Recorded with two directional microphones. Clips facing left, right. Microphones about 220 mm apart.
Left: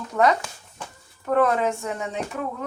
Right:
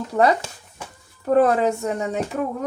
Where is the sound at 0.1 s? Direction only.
30° right (ahead or behind).